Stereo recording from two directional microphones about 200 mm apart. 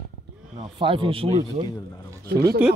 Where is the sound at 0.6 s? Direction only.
25° right (ahead or behind).